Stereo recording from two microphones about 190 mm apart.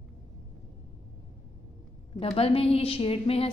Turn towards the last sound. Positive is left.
turn(degrees=30)  # may be behind; listen again after turning